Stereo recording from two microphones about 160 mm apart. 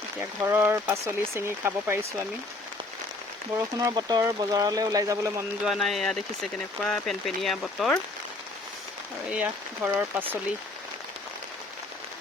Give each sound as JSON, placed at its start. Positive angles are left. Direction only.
{"t": 0.2, "sound": "speech", "side_deg": -15}
{"t": 3.8, "sound": "speech", "side_deg": -25}
{"t": 5.6, "sound": "speech", "side_deg": 0}
{"t": 9.3, "sound": "speech", "side_deg": -10}